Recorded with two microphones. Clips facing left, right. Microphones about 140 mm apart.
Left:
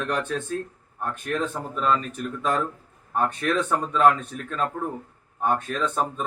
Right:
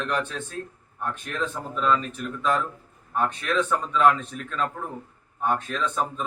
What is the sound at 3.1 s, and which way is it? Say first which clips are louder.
A man's voice: left 1 dB; 50° left (ahead or behind).